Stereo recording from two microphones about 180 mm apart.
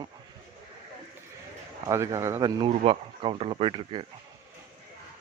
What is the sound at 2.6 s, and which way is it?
Speech, 30° right (ahead or behind).